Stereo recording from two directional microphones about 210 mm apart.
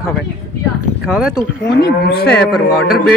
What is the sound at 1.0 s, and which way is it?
Speech, 5° right (ahead or behind).